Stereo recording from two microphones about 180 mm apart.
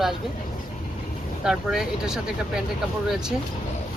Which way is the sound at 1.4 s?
5° right (ahead or behind).